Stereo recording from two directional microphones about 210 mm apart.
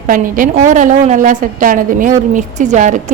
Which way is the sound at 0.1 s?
40° right (ahead or behind).